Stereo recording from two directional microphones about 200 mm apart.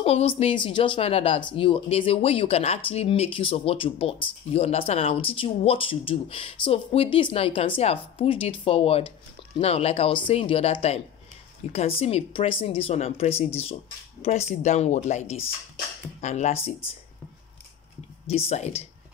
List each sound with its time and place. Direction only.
0.0 s speech: 30° left (ahead or behind)
18.2 s speech: 30° left (ahead or behind)